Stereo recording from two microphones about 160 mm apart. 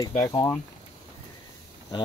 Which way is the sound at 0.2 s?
20° left (ahead or behind).